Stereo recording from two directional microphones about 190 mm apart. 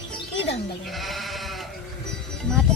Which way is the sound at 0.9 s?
Centre (ahead or behind).